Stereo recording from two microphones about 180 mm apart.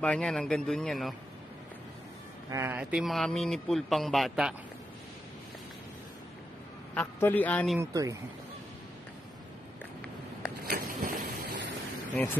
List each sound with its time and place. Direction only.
0.0 s a man's voice: 5° left (ahead or behind)
2.5 s a man's voice: 10° right (ahead or behind)
6.9 s speech: 10° left (ahead or behind)
7.8 s speech: 20° right (ahead or behind)
10.6 s vehicle: 55° right (ahead or behind)